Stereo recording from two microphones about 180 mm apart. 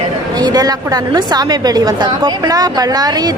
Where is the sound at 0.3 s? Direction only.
20° right (ahead or behind).